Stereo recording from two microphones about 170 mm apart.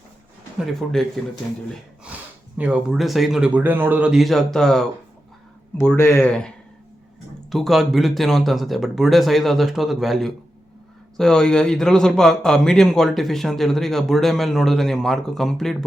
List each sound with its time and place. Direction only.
0.6 s a man's voice: centre (ahead or behind)
2.6 s a man's voice: 5° right (ahead or behind)
6.0 s speech: 15° left (ahead or behind)
7.5 s a man's voice: centre (ahead or behind)